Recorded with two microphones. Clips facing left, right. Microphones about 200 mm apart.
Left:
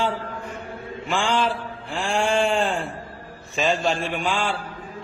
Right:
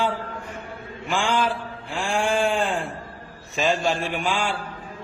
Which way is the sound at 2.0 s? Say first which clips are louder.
Left 1 dB; centre (ahead or behind).